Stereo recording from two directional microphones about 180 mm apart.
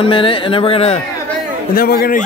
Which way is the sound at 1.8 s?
55° left (ahead or behind).